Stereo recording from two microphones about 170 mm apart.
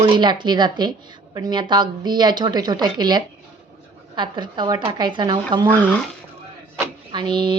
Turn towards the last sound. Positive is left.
turn(degrees=-25)  # may be behind; listen again after turning